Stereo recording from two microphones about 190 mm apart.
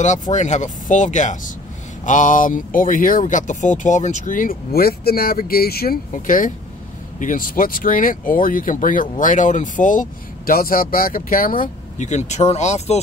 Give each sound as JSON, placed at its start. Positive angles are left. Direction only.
{"t": 0.0, "sound": "speech", "side_deg": 40}